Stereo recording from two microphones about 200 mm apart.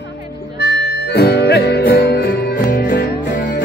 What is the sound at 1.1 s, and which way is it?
Music, 55° left (ahead or behind).